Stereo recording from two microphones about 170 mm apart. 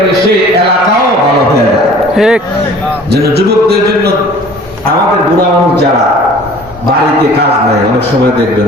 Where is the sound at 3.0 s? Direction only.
70° right (ahead or behind).